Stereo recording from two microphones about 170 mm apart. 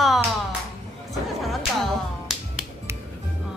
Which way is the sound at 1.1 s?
Centre (ahead or behind).